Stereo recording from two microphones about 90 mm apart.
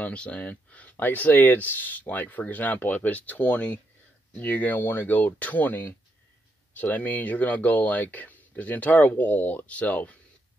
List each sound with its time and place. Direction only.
0.0 s speech: 15° left (ahead or behind)